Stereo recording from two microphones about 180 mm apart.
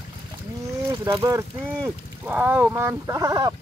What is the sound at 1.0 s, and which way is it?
Speech, 25° right (ahead or behind).